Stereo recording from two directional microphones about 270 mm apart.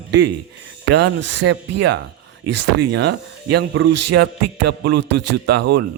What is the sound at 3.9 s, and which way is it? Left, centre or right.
Speech, right.